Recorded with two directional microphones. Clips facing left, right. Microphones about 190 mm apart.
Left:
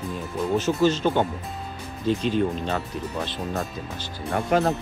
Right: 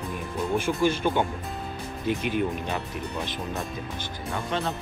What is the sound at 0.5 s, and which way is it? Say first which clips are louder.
Speech: left 3 dB; 10° right (ahead or behind).